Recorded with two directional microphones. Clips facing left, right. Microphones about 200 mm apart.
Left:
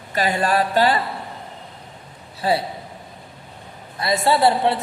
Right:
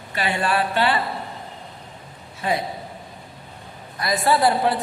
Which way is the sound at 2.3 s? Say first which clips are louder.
Left 3 dB; 35° left (ahead or behind).